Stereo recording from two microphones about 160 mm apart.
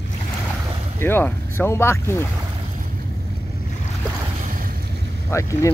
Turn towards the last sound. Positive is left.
turn(degrees=20)  # may be behind; listen again after turning